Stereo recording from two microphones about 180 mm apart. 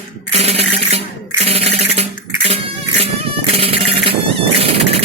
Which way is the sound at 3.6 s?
30° right (ahead or behind).